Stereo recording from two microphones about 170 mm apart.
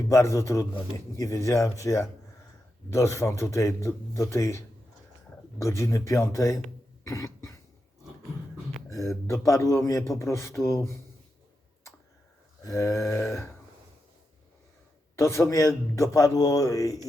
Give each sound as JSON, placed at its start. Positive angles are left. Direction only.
{"t": 0.1, "sound": "a man's voice", "side_deg": 20}
{"t": 9.2, "sound": "a man's voice", "side_deg": 15}
{"t": 12.6, "sound": "a man's voice", "side_deg": 20}
{"t": 15.2, "sound": "a man's voice", "side_deg": 15}